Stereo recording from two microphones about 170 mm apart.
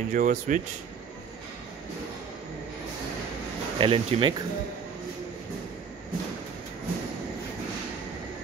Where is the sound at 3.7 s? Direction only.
35° right (ahead or behind).